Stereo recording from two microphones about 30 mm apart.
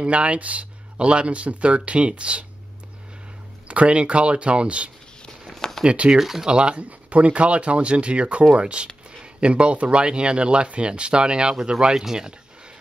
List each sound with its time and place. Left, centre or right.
0.0 s speech: right
3.6 s speech: right
5.6 s a sound: left
6.1 s speech: centre
6.4 s speech: right
6.8 s speech: right
12.0 s speech: centre